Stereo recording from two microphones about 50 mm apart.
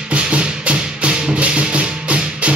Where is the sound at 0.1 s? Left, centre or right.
Right.